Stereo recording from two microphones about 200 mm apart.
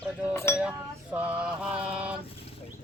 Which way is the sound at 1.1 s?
5° right (ahead or behind).